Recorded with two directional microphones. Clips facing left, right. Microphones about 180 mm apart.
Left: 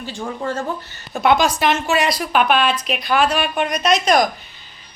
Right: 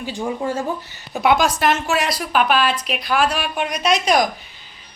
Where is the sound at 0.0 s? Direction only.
15° right (ahead or behind).